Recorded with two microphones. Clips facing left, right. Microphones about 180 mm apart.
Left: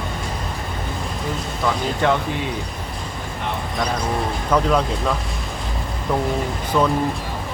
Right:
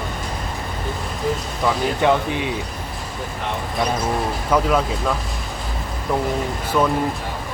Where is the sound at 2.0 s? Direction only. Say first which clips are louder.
Right 2 dB; 15° right (ahead or behind).